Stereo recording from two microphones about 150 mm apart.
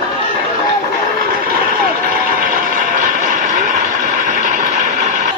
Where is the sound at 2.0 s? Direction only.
70° right (ahead or behind); by 5.3 s 55° right (ahead or behind).